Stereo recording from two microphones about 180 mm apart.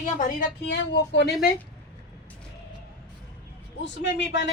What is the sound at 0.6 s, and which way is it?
Speech, 75° left (ahead or behind).